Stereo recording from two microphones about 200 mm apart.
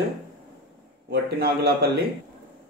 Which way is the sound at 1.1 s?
50° right (ahead or behind).